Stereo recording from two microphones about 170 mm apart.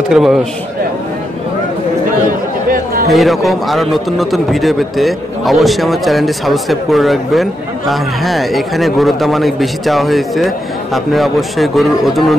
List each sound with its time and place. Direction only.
0.1 s a man's voice: centre (ahead or behind)
2.2 s chatter: 55° right (ahead or behind)
3.1 s a man's voice: centre (ahead or behind)